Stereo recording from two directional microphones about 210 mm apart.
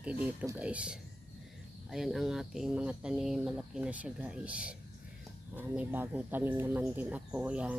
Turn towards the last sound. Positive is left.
turn(degrees=-5)  # may be behind; listen again after turning